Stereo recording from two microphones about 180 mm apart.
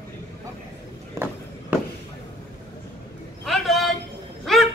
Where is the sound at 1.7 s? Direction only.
10° right (ahead or behind).